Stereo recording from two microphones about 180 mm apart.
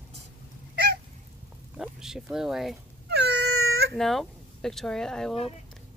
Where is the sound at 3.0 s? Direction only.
70° right (ahead or behind).